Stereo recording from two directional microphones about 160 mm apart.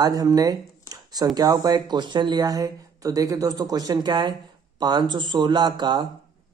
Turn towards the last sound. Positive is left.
turn(degrees=-30)  # may be behind; listen again after turning